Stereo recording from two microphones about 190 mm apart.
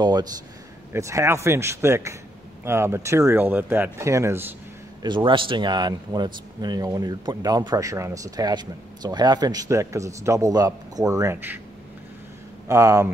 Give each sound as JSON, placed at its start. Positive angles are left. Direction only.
{"t": 0.0, "sound": "speech", "side_deg": -20}
{"t": 5.0, "sound": "speech", "side_deg": -25}
{"t": 12.6, "sound": "speech", "side_deg": -15}